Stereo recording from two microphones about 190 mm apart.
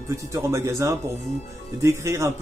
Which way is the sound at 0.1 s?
15° right (ahead or behind).